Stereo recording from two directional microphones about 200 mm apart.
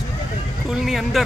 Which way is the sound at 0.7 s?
Centre (ahead or behind).